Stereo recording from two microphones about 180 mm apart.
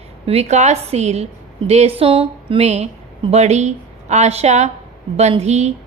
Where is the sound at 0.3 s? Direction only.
35° right (ahead or behind).